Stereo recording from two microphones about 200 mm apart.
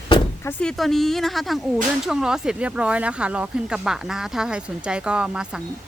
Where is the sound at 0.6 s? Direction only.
Centre (ahead or behind).